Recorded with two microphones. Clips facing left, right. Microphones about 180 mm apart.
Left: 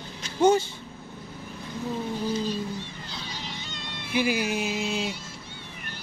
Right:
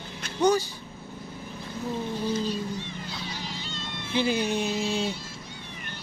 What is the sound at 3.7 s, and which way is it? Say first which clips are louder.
Cat: left 1 dB; 15° left (ahead or behind).